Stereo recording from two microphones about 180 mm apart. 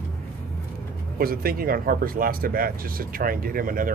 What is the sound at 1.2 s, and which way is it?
Speech, 55° right (ahead or behind).